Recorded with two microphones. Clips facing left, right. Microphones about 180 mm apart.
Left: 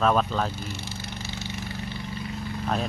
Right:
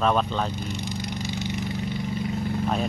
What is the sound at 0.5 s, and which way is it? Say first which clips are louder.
Vehicle: right 5 dB; 15° right (ahead or behind).